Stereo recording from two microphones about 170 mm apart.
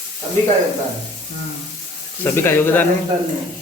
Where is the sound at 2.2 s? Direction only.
15° left (ahead or behind).